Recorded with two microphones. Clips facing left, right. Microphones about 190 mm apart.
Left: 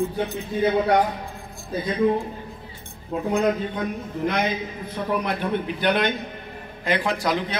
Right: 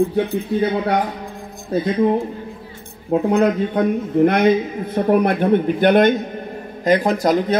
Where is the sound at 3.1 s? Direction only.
65° right (ahead or behind).